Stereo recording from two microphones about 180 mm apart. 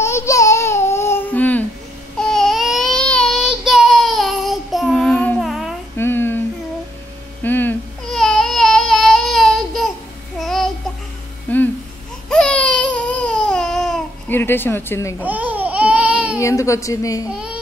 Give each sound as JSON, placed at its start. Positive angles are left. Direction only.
{"t": 0.0, "sound": "babbling", "side_deg": 15}
{"t": 2.1, "sound": "a sound", "side_deg": 5}
{"t": 5.9, "sound": "child singing", "side_deg": 10}
{"t": 7.4, "sound": "baby cry", "side_deg": 10}
{"t": 10.4, "sound": "babbling", "side_deg": 0}
{"t": 11.5, "sound": "a sound", "side_deg": 10}
{"t": 12.3, "sound": "baby cry", "side_deg": 5}
{"t": 15.2, "sound": "babbling", "side_deg": -10}
{"t": 16.3, "sound": "a woman's voice", "side_deg": 15}
{"t": 17.3, "sound": "a sound", "side_deg": -5}